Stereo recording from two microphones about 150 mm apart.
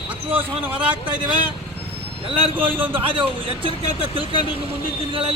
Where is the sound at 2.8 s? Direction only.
35° right (ahead or behind).